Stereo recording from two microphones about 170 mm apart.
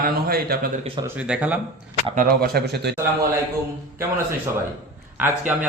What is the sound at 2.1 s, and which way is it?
Speech, 55° right (ahead or behind).